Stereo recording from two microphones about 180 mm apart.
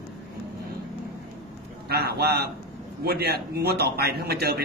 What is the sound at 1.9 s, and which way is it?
A man's voice, 60° right (ahead or behind).